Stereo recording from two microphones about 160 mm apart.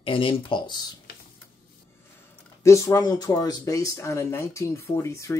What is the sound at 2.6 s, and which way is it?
Speech, 20° left (ahead or behind).